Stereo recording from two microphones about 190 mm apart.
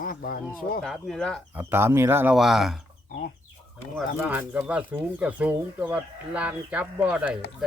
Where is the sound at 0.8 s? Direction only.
Centre (ahead or behind).